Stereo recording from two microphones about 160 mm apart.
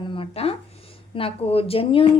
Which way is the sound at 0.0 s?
35° left (ahead or behind).